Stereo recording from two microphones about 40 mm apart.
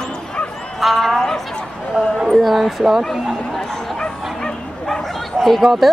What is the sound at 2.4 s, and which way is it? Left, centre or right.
Speech, centre.